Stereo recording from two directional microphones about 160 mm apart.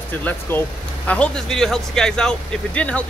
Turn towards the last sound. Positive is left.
turn(degrees=5)  # may be behind; listen again after turning